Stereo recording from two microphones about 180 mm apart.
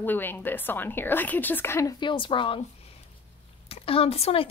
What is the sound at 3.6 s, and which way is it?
Speech, 30° left (ahead or behind).